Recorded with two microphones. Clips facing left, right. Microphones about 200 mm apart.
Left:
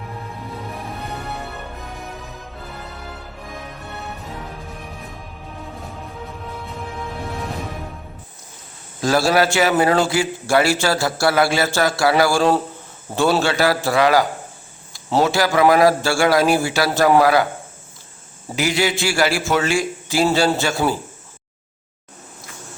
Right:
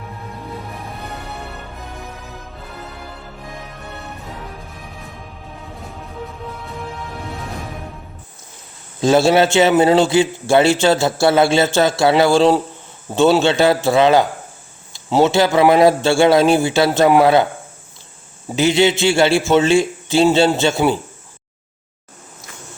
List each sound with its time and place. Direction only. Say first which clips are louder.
9.0 s a man's voice: right 4 dB; 25° right (ahead or behind)
18.5 s a man's voice: right 6 dB; 25° right (ahead or behind)